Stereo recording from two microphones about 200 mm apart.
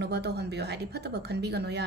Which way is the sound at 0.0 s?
55° right (ahead or behind).